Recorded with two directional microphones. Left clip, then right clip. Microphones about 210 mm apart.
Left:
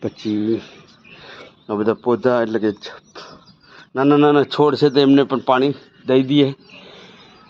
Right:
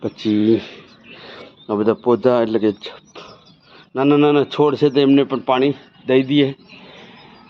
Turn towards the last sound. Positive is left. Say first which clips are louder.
# even
turn(degrees=15)  # may be behind; listen again after turning